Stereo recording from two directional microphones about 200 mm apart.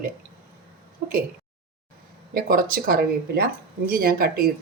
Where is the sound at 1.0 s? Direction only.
40° right (ahead or behind).